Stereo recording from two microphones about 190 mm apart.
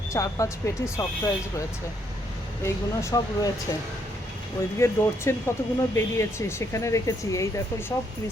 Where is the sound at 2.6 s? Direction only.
15° left (ahead or behind).